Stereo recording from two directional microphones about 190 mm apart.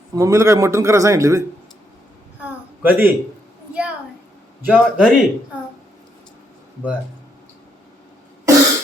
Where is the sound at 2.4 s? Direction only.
10° right (ahead or behind).